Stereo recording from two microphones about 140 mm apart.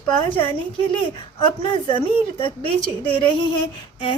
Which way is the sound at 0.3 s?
40° left (ahead or behind).